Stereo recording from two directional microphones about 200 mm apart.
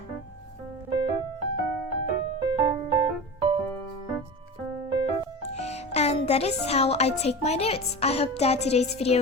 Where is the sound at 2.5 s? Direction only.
20° right (ahead or behind).